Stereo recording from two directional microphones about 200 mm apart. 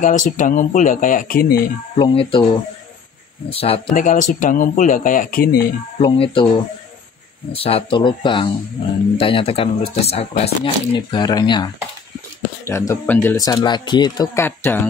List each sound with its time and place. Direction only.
0.0 s speech: 40° left (ahead or behind)
2.0 s speech: 30° left (ahead or behind)
3.4 s speech: 30° left (ahead or behind)
3.9 s speech: 40° left (ahead or behind)
5.9 s speech: 30° left (ahead or behind)
7.5 s speech: 30° left (ahead or behind); by 14.9 s 10° left (ahead or behind)